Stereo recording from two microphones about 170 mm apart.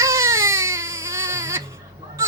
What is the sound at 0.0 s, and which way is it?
Baby cry, 15° right (ahead or behind).